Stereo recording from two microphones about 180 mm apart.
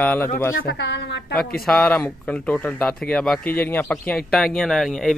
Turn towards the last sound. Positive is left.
turn(degrees=0)  # may be behind; listen again after turning